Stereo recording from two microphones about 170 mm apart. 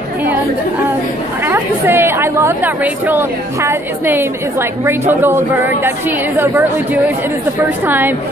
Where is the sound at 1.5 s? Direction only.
15° right (ahead or behind).